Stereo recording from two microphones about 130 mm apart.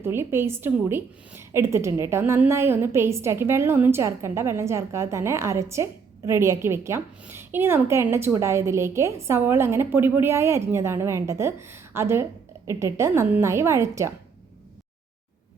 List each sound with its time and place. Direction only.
0.0 s a woman's voice: 20° right (ahead or behind)